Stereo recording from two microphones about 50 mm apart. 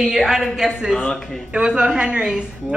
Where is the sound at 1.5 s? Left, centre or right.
Centre.